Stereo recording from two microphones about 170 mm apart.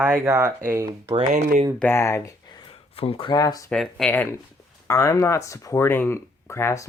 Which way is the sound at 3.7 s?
5° left (ahead or behind).